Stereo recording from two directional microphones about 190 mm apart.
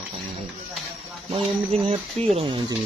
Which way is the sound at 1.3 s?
30° right (ahead or behind).